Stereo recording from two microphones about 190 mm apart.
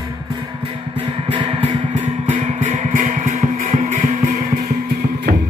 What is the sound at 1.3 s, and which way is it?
Music, 30° right (ahead or behind).